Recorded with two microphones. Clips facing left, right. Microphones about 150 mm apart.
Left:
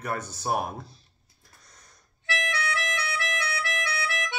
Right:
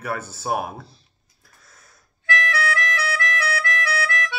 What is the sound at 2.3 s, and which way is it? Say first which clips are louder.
Music: right 6 dB; 20° left (ahead or behind).